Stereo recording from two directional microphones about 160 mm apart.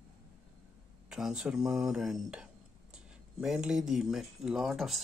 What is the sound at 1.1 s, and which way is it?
Speech, 5° right (ahead or behind).